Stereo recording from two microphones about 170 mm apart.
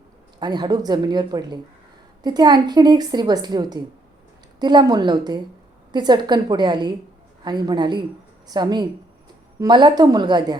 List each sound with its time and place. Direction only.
0.3 s a woman's voice: 25° right (ahead or behind)